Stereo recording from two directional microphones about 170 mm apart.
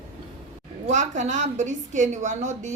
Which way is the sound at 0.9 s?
45° right (ahead or behind).